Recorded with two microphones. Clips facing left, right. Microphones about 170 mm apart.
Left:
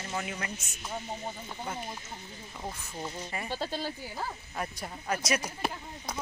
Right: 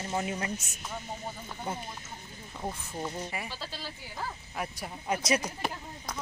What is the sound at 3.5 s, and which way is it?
Speech, 50° left (ahead or behind).